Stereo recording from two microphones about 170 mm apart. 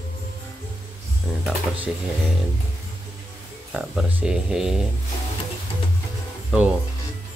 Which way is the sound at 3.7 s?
5° right (ahead or behind).